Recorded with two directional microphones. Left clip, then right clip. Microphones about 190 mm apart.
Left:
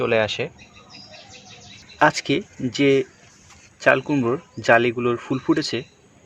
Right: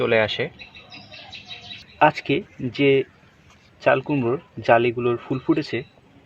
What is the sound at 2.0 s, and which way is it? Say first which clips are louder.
Speech: even; 15° left (ahead or behind).